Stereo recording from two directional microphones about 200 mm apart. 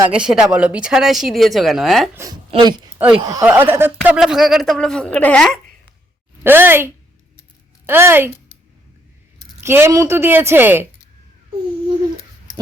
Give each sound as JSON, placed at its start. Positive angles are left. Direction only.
{"t": 0.1, "sound": "speech", "side_deg": -5}
{"t": 2.5, "sound": "a woman's voice", "side_deg": -20}
{"t": 6.4, "sound": "a woman's voice", "side_deg": -10}
{"t": 9.6, "sound": "a woman's voice", "side_deg": -10}